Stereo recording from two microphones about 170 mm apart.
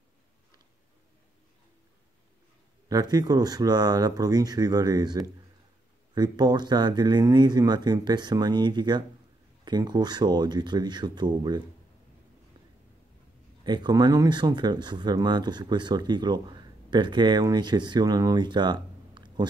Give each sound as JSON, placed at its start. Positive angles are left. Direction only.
{"t": 2.9, "sound": "speech", "side_deg": -25}
{"t": 13.7, "sound": "speech", "side_deg": -25}